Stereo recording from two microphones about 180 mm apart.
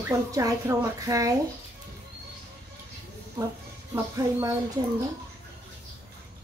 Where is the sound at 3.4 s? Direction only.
20° right (ahead or behind).